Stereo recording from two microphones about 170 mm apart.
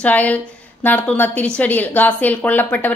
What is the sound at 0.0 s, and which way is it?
A woman's voice, 10° left (ahead or behind).